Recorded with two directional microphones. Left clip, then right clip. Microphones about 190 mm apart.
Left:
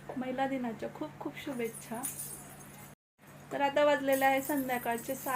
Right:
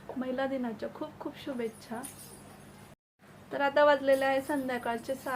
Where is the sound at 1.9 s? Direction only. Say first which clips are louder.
Even; 10° right (ahead or behind).